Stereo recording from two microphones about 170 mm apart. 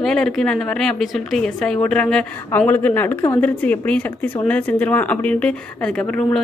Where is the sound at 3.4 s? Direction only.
10° left (ahead or behind).